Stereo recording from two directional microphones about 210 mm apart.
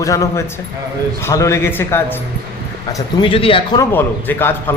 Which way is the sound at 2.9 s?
25° left (ahead or behind).